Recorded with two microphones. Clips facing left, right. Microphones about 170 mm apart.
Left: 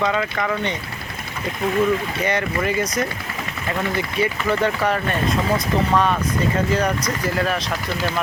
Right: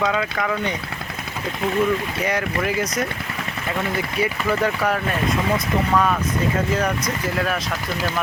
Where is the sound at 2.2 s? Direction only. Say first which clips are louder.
Left 1 dB; 5° right (ahead or behind).